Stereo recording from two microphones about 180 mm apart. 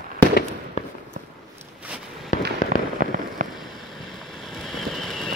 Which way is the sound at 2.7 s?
50° right (ahead or behind).